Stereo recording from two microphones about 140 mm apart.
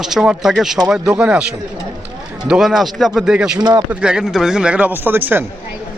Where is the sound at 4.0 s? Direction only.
5° right (ahead or behind).